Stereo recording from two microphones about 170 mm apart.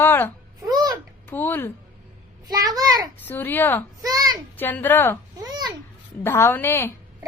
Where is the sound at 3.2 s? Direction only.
10° left (ahead or behind).